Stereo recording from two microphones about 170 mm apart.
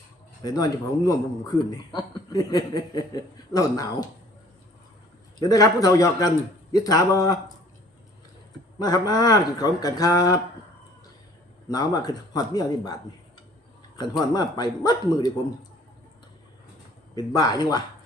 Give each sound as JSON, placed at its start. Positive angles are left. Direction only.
{"t": 0.4, "sound": "speech", "side_deg": 20}
{"t": 5.4, "sound": "speech", "side_deg": 20}
{"t": 8.8, "sound": "speech", "side_deg": 25}
{"t": 11.7, "sound": "speech", "side_deg": 25}
{"t": 17.2, "sound": "speech", "side_deg": 25}